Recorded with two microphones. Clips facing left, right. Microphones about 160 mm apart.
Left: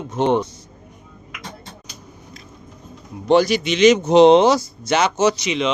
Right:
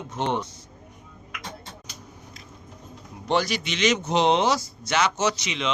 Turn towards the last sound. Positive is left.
turn(degrees=10)  # may be behind; listen again after turning